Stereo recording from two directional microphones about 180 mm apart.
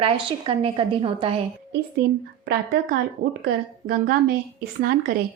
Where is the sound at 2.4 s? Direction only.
60° right (ahead or behind).